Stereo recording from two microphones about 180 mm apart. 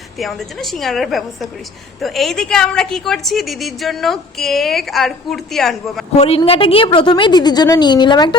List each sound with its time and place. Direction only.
0.2 s a woman's voice: centre (ahead or behind)
6.1 s a woman's voice: 35° left (ahead or behind)